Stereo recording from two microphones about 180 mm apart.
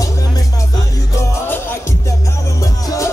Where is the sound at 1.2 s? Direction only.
10° left (ahead or behind).